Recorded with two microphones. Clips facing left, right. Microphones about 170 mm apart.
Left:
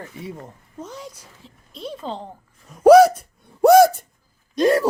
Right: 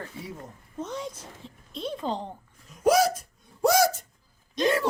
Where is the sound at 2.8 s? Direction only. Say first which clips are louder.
Left 11 dB; 60° left (ahead or behind).